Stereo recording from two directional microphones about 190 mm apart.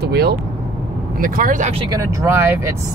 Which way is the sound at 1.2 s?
45° right (ahead or behind).